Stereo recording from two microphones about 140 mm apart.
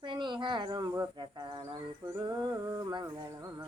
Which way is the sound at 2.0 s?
20° right (ahead or behind).